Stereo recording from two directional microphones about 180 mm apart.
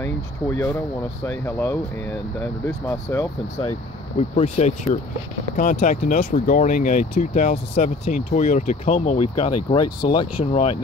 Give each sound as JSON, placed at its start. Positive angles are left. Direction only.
{"t": 1.2, "sound": "speech", "side_deg": 15}
{"t": 4.2, "sound": "speech", "side_deg": 35}
{"t": 9.8, "sound": "speech", "side_deg": 25}
{"t": 10.4, "sound": "speech", "side_deg": 40}